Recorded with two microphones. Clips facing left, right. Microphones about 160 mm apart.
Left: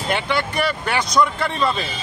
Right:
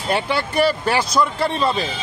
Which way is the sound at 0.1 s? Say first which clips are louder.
Right 2 dB; 30° right (ahead or behind).